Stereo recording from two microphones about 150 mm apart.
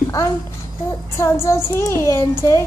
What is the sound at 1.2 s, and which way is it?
A child's voice, 20° left (ahead or behind).